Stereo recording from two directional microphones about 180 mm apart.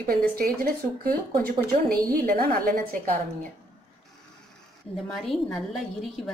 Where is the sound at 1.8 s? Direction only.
55° right (ahead or behind).